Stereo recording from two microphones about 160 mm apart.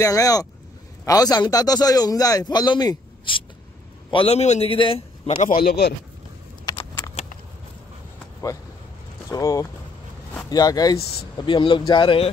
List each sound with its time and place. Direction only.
0.0 s a man's voice: 20° left (ahead or behind); by 5.5 s 40° left (ahead or behind)
5.5 s a man's voice: 75° left (ahead or behind)
6.6 s a sound: 30° left (ahead or behind)
9.3 s a man's voice: 20° left (ahead or behind)